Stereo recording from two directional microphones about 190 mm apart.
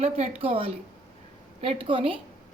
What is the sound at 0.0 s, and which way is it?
A woman's voice, 30° right (ahead or behind).